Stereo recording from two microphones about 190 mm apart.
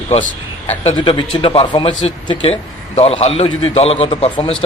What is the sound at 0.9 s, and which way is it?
Speech, 25° left (ahead or behind).